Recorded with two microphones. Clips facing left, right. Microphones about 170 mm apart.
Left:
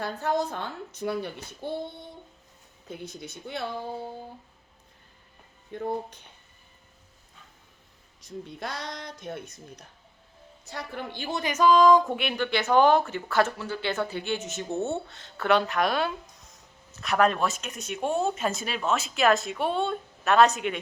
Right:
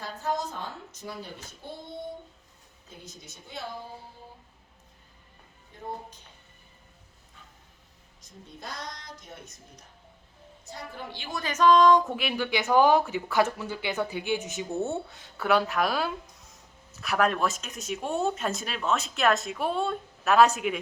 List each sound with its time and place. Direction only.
0.0 s speech: 65° left (ahead or behind)
3.0 s speech: 60° left (ahead or behind)
5.7 s a woman's voice: 65° left (ahead or behind)
8.5 s a woman's voice: 65° left (ahead or behind)
11.3 s speech: 20° left (ahead or behind)
11.5 s speech: 5° left (ahead or behind)